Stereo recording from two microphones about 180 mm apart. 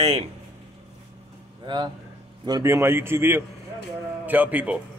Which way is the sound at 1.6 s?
25° right (ahead or behind).